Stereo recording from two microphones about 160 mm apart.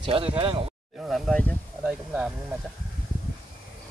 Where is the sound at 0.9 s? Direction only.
Centre (ahead or behind).